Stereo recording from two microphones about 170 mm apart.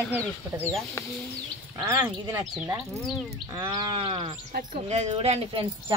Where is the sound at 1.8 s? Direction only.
20° right (ahead or behind).